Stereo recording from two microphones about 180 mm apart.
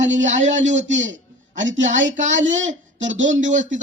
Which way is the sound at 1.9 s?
45° right (ahead or behind).